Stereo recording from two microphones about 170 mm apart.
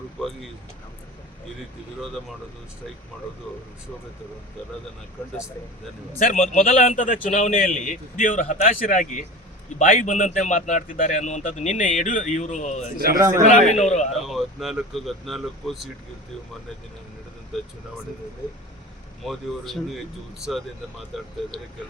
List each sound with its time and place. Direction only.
6.1 s a man's voice: 50° left (ahead or behind)
13.1 s a man's voice: 20° right (ahead or behind)
13.7 s a man's voice: 40° left (ahead or behind)
14.1 s speech: centre (ahead or behind)
19.2 s speech: centre (ahead or behind)